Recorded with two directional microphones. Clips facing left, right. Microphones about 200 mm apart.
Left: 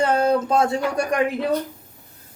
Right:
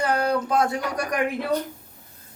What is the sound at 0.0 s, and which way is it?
Speech, 25° left (ahead or behind).